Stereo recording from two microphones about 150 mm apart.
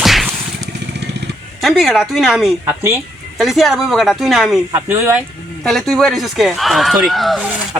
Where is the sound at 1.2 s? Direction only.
90° right.